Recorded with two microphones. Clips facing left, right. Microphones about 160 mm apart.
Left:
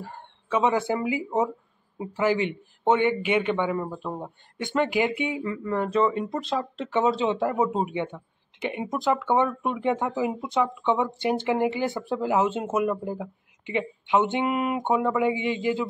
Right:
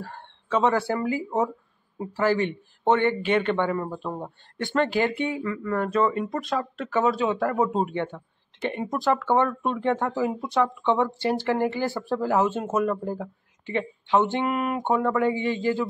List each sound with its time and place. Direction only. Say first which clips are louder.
0.0 s a man's voice: right 1 dB; 15° left (ahead or behind)